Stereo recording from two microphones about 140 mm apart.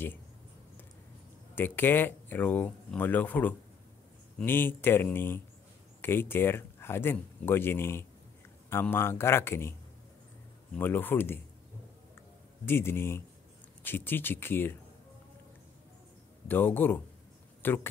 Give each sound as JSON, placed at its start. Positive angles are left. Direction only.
{"t": 1.5, "sound": "speech", "side_deg": 15}
{"t": 10.8, "sound": "speech", "side_deg": 15}
{"t": 12.2, "sound": "a sound", "side_deg": 15}
{"t": 13.8, "sound": "speech", "side_deg": 15}
{"t": 16.4, "sound": "speech", "side_deg": 15}